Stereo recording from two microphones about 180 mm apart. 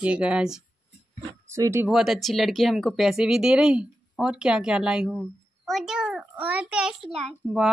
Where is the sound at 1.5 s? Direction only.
15° right (ahead or behind).